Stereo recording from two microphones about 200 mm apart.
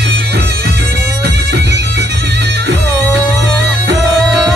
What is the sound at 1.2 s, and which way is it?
Music, 55° right (ahead or behind).